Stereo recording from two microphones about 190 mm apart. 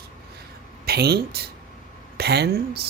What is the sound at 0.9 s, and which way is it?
Speech, 55° right (ahead or behind).